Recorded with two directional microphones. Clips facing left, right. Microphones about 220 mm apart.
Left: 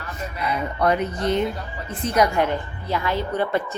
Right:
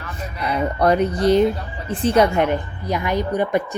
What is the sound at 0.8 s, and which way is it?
A woman's voice, 35° right (ahead or behind).